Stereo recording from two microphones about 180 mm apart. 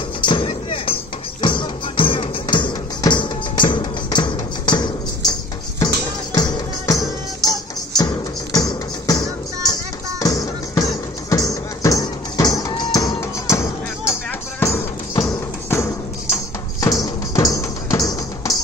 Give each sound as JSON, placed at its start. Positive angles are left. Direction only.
{"t": 0.2, "sound": "music", "side_deg": 30}
{"t": 6.3, "sound": "music", "side_deg": 20}
{"t": 10.2, "sound": "music", "side_deg": 20}